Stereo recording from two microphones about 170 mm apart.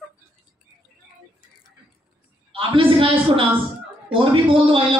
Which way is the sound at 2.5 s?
30° right (ahead or behind).